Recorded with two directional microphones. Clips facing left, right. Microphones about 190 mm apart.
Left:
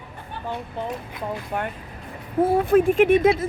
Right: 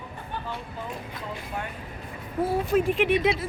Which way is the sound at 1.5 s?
60° left (ahead or behind).